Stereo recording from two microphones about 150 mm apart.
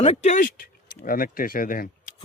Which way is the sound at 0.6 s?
70° left (ahead or behind).